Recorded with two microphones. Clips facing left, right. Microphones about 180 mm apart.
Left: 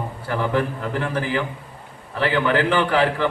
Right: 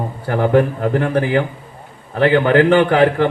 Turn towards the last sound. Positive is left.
turn(degrees=-55)  # may be behind; listen again after turning